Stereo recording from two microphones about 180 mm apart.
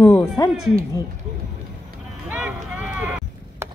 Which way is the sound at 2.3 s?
10° right (ahead or behind).